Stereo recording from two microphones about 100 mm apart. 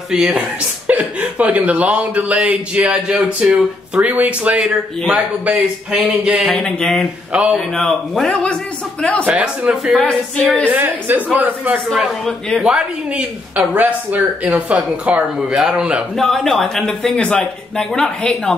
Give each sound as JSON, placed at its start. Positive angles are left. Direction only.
{"t": 0.1, "sound": "speech", "side_deg": -5}
{"t": 6.5, "sound": "a man's voice", "side_deg": 10}
{"t": 9.2, "sound": "a man's voice", "side_deg": -10}
{"t": 10.7, "sound": "speech", "side_deg": -15}
{"t": 11.9, "sound": "a man's voice", "side_deg": 0}
{"t": 12.6, "sound": "speech", "side_deg": -10}
{"t": 16.2, "sound": "a man's voice", "side_deg": 5}